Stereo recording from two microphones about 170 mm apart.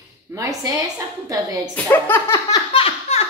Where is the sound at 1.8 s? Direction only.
10° left (ahead or behind).